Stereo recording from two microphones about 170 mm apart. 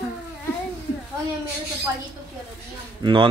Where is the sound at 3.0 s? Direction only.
30° right (ahead or behind).